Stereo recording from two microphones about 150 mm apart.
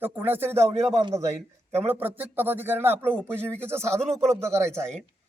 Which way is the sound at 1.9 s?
15° right (ahead or behind).